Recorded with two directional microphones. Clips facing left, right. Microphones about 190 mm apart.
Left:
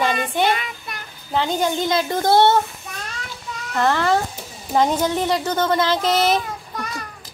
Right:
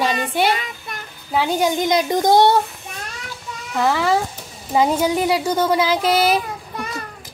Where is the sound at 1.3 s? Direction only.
10° right (ahead or behind).